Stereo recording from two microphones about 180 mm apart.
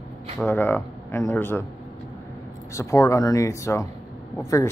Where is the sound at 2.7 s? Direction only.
15° left (ahead or behind).